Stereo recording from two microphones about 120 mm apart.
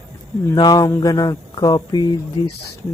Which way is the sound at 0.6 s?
30° left (ahead or behind).